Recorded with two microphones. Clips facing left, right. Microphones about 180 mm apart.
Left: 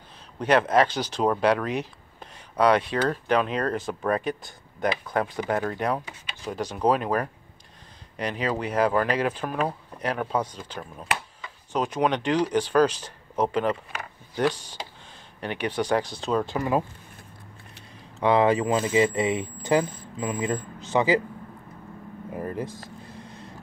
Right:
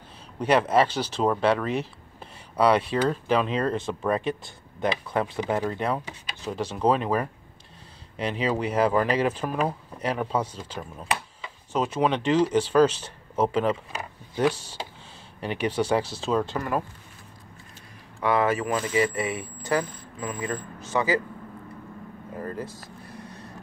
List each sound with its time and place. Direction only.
0.4 s speech: 5° right (ahead or behind)
8.3 s speech: 5° right (ahead or behind)
16.5 s speech: 15° left (ahead or behind)
18.2 s speech: 20° left (ahead or behind)
22.3 s a sound: 15° left (ahead or behind)